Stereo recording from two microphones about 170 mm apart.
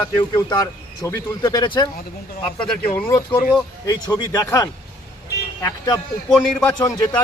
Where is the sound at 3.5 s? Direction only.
20° left (ahead or behind).